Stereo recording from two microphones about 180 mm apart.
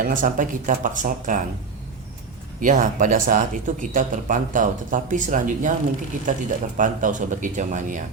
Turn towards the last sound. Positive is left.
turn(degrees=-45)  # may be behind; listen again after turning